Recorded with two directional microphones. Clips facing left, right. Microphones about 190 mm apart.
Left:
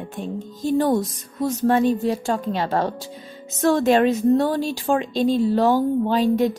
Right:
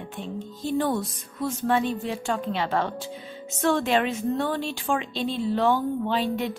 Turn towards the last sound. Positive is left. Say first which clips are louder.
# left 7 dB
turn(degrees=40)  # may be behind; listen again after turning